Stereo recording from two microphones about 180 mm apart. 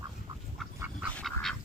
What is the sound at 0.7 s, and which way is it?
Duck, 10° right (ahead or behind).